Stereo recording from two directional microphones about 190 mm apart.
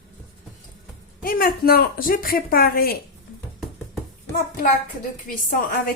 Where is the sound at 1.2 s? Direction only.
50° left (ahead or behind).